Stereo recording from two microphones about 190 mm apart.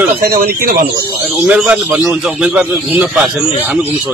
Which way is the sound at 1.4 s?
10° right (ahead or behind).